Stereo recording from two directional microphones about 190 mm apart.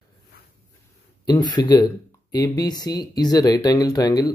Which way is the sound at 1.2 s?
20° left (ahead or behind).